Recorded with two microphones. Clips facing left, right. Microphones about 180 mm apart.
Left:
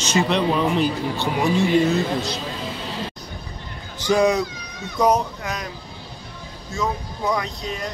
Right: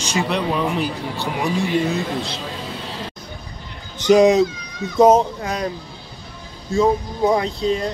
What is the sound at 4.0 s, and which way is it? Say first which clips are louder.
Speech: right 6 dB; 20° right (ahead or behind).